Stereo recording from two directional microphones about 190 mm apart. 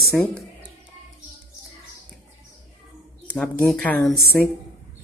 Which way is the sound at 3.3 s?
5° left (ahead or behind).